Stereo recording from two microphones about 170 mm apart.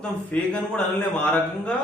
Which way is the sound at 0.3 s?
10° left (ahead or behind).